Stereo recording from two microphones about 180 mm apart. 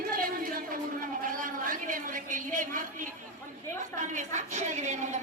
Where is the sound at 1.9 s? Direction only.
50° right (ahead or behind).